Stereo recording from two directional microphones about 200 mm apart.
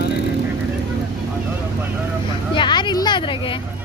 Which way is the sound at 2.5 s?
25° left (ahead or behind).